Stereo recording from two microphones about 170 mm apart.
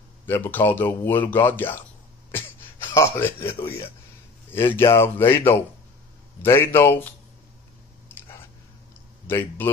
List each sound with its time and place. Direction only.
0.3 s speech: 10° left (ahead or behind)
2.3 s throat clearing: 15° left (ahead or behind)
4.5 s speech: 15° left (ahead or behind)
9.3 s speech: 15° left (ahead or behind)